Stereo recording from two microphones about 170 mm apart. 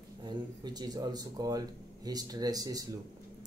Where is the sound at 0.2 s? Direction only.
25° right (ahead or behind).